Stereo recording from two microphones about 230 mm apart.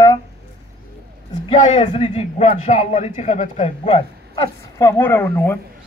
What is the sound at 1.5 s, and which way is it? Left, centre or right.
A man's voice, left.